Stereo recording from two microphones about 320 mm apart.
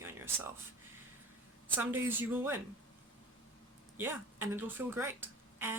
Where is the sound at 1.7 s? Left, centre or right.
Centre.